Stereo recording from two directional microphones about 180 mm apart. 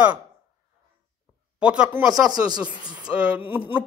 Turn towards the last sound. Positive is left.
turn(degrees=-10)  # may be behind; listen again after turning